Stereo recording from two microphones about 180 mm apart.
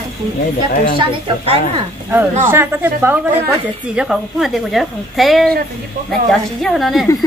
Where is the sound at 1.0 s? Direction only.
30° right (ahead or behind).